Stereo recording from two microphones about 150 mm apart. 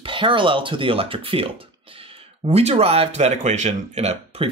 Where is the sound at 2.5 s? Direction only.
45° right (ahead or behind).